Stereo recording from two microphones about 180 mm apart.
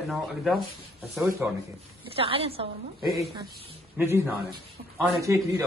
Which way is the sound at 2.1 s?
30° right (ahead or behind).